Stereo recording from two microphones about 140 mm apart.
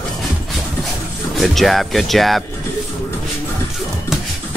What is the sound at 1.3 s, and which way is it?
Speech, centre (ahead or behind).